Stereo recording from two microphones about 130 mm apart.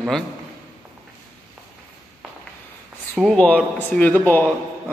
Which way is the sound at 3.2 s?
5° left (ahead or behind).